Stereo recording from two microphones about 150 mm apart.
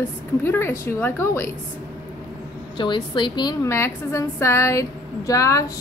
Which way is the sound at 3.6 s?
20° left (ahead or behind).